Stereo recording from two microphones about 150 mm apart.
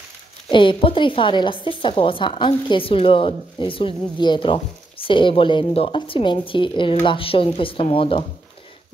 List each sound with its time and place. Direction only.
0.5 s a woman's voice: 35° left (ahead or behind)